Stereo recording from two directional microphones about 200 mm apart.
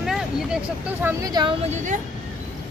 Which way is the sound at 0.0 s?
Centre (ahead or behind).